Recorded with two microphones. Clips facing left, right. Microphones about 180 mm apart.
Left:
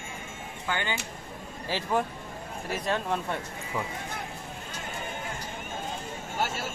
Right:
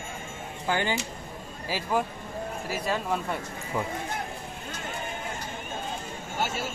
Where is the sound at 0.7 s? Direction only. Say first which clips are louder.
Right 4 dB; 35° right (ahead or behind).